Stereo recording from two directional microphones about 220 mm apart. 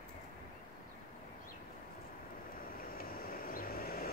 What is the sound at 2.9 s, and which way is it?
Vehicle, 40° left (ahead or behind).